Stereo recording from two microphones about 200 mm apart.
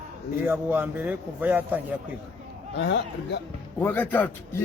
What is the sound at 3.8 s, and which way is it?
Speech, 10° left (ahead or behind).